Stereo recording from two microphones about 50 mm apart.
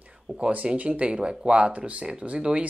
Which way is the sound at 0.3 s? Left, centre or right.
Centre.